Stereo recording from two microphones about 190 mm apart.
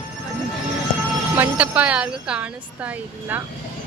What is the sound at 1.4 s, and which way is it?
A woman's voice, 10° right (ahead or behind).